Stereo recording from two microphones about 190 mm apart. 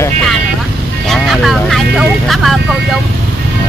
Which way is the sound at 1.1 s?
Centre (ahead or behind).